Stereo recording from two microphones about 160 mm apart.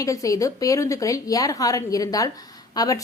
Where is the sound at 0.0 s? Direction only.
20° left (ahead or behind).